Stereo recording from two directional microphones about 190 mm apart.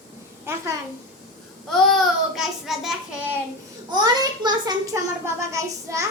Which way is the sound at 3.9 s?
20° right (ahead or behind).